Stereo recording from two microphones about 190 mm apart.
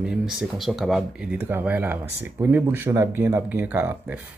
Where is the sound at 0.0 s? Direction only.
5° right (ahead or behind).